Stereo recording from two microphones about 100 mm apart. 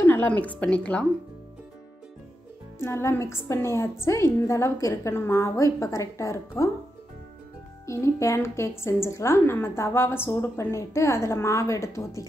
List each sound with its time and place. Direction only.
0.0 s a woman's voice: 20° left (ahead or behind)
2.8 s a woman's voice: 25° left (ahead or behind)
7.8 s a woman's voice: 30° left (ahead or behind)